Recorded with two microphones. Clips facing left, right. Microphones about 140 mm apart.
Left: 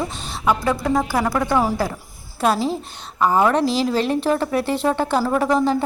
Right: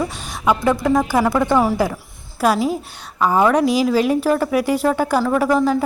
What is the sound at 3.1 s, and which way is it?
Speech, 5° left (ahead or behind).